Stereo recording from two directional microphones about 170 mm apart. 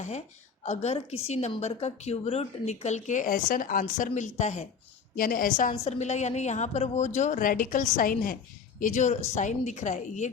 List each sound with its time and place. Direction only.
0.6 s a woman's voice: 40° left (ahead or behind)
5.1 s a woman's voice: 60° left (ahead or behind)